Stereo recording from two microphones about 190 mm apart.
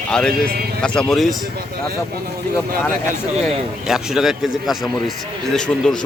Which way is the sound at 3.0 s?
40° right (ahead or behind).